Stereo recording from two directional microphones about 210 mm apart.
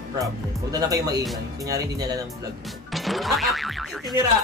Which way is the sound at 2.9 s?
Centre (ahead or behind).